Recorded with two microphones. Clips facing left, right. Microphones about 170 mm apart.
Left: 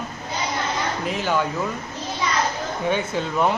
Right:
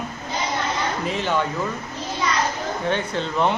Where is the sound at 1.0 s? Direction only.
5° left (ahead or behind).